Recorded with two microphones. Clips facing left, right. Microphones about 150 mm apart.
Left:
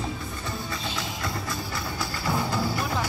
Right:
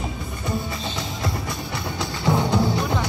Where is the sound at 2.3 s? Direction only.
25° right (ahead or behind).